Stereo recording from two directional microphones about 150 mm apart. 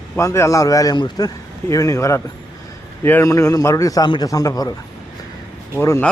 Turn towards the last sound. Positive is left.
turn(degrees=20)  # may be behind; listen again after turning